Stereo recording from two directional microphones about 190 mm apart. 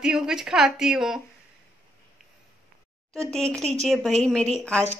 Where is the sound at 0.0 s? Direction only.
5° right (ahead or behind).